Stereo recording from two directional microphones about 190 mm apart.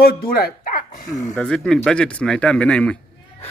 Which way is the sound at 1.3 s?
5° left (ahead or behind).